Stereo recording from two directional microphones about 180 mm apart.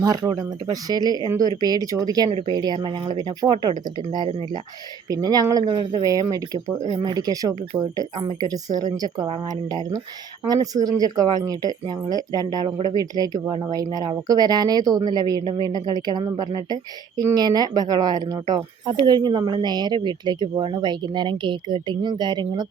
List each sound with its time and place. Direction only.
0.0 s speech: 20° right (ahead or behind)